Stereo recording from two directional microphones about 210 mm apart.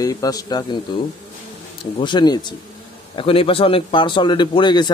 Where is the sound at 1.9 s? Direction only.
20° left (ahead or behind).